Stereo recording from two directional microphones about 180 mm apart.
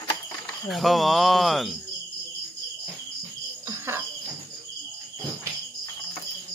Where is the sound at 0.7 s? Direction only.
Centre (ahead or behind).